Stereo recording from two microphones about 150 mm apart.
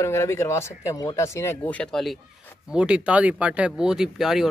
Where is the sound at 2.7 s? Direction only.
5° right (ahead or behind).